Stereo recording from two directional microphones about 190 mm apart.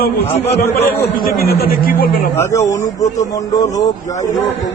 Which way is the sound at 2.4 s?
15° left (ahead or behind).